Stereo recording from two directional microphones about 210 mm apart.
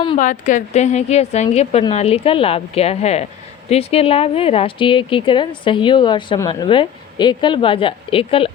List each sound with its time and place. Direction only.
0.2 s a woman's voice: 35° left (ahead or behind)